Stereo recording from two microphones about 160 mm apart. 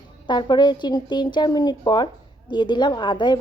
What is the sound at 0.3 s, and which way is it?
A woman's voice, 25° left (ahead or behind).